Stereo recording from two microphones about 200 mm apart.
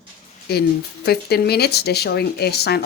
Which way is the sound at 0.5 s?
50° left (ahead or behind).